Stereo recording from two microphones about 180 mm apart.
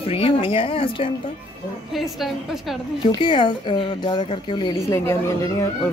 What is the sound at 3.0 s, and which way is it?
A woman's voice, 25° left (ahead or behind).